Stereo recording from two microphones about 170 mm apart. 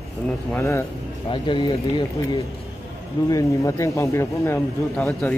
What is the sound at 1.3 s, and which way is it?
Speech, 30° left (ahead or behind).